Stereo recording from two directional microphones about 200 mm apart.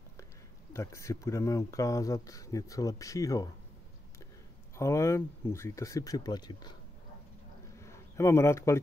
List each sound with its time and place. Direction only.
0.7 s speech: 15° left (ahead or behind)
4.7 s speech: 15° left (ahead or behind)
7.8 s speech: 15° left (ahead or behind)